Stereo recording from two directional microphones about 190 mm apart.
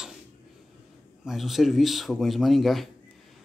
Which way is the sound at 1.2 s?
Centre (ahead or behind).